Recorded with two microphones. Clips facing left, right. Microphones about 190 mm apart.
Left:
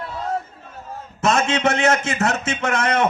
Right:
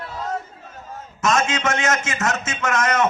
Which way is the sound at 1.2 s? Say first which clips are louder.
Left 2 dB; 35° left (ahead or behind).